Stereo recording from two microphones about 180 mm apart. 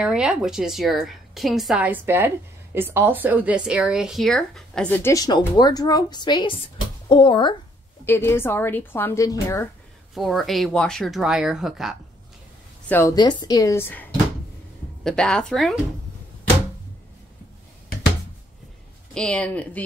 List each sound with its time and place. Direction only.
0.0 s a woman's voice: 5° right (ahead or behind); by 7.5 s 25° left (ahead or behind)
8.0 s a woman's voice: 10° left (ahead or behind)
10.1 s a woman's voice: centre (ahead or behind)
12.8 s a woman's voice: 10° left (ahead or behind)
13.1 s a woman's voice: 25° left (ahead or behind)
15.0 s a woman's voice: 5° left (ahead or behind)
19.1 s a woman's voice: 5° left (ahead or behind)